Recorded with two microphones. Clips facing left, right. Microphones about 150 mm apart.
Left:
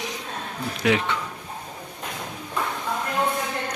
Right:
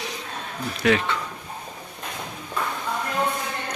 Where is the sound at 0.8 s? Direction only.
15° left (ahead or behind).